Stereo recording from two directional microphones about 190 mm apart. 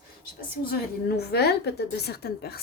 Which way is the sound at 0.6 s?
55° left (ahead or behind).